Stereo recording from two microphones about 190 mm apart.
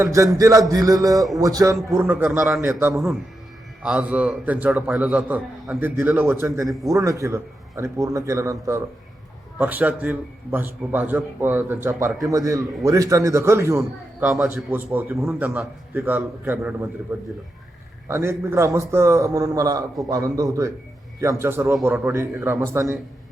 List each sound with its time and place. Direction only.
0.0 s a man's voice: 15° right (ahead or behind)
0.7 s a sound: 20° right (ahead or behind)
1.4 s a man's voice: 20° right (ahead or behind)